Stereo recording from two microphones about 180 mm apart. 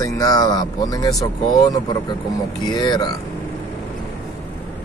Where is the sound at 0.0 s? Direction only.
20° left (ahead or behind).